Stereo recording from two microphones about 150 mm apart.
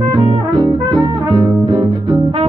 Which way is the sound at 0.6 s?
30° right (ahead or behind).